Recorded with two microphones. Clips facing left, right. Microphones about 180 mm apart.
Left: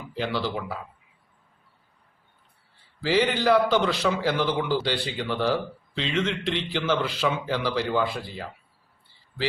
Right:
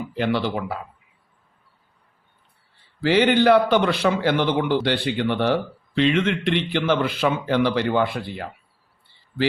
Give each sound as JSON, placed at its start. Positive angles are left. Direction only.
{"t": 0.2, "sound": "a man's voice", "side_deg": -60}
{"t": 3.0, "sound": "a man's voice", "side_deg": -65}